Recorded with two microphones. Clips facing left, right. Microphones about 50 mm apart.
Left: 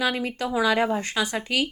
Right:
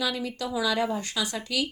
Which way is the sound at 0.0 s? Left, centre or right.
Left.